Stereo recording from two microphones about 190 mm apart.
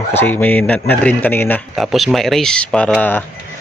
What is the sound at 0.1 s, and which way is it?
Speech, 10° left (ahead or behind).